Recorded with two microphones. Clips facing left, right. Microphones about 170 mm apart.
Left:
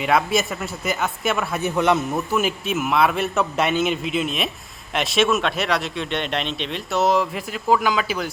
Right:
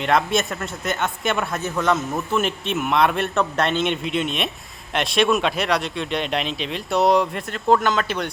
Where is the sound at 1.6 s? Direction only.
15° left (ahead or behind).